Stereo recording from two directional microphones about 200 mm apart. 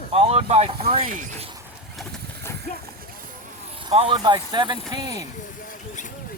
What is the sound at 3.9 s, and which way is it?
A woman's voice, 25° right (ahead or behind).